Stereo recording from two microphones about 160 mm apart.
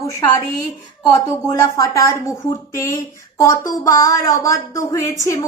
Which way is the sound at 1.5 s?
20° left (ahead or behind).